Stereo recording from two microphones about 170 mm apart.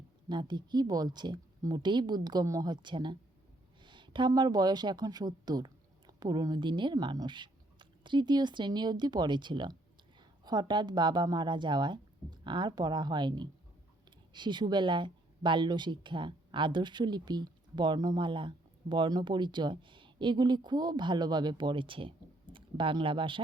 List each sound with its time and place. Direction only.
0.3 s speech: 25° right (ahead or behind)